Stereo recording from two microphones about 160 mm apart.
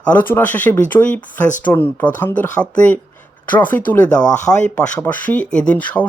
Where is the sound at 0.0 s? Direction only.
10° left (ahead or behind).